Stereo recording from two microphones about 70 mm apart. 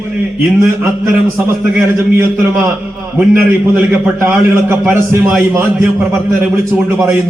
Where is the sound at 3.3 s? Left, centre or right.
Right.